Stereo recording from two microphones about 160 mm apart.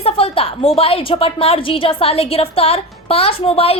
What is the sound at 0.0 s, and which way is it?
A woman's voice, 35° left (ahead or behind).